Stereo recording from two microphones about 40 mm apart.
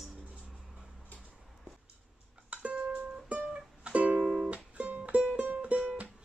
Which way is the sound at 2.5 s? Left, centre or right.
Right.